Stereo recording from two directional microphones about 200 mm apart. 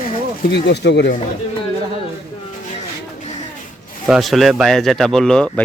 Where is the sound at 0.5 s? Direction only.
55° left (ahead or behind).